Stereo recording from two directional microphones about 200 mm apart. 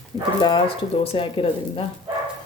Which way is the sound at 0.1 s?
20° left (ahead or behind).